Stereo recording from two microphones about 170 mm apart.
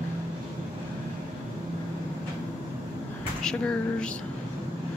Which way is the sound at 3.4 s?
5° left (ahead or behind).